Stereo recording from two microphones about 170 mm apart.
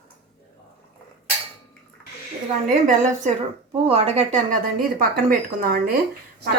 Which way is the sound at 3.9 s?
35° right (ahead or behind).